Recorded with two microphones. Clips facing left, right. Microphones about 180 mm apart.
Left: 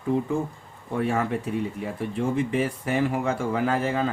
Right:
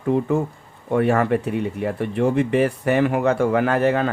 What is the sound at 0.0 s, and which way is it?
Speech, 65° right (ahead or behind).